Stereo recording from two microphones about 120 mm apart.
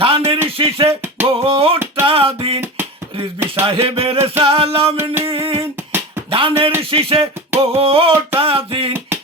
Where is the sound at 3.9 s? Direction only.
50° right (ahead or behind).